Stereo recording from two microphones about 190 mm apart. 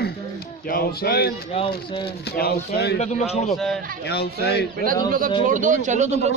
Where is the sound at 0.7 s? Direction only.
50° left (ahead or behind).